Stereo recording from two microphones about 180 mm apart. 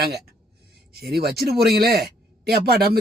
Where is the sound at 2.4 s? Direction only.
60° right (ahead or behind).